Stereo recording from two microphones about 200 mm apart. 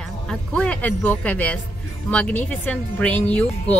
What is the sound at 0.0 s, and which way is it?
Speech, 5° left (ahead or behind).